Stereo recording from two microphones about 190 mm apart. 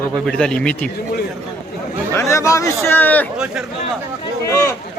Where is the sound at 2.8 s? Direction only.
10° left (ahead or behind).